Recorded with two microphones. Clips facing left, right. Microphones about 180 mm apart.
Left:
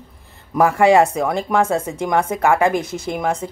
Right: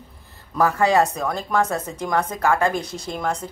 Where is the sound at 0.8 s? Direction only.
25° left (ahead or behind).